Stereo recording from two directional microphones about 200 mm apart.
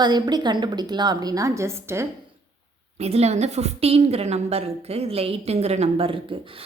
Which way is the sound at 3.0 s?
30° right (ahead or behind).